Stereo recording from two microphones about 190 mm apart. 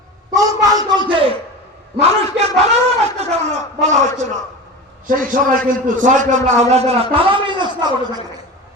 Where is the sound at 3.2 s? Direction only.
35° right (ahead or behind).